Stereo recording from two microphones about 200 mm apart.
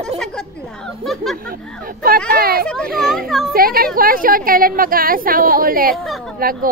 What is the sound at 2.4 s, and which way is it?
A woman's voice, 50° right (ahead or behind).